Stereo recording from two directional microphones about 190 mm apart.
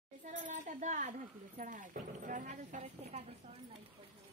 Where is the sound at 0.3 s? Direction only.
40° right (ahead or behind).